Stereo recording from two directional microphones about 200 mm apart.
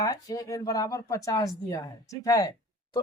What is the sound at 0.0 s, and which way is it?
Speech, 15° left (ahead or behind).